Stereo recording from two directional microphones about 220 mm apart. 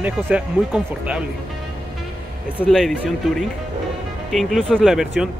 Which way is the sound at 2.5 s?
5° left (ahead or behind).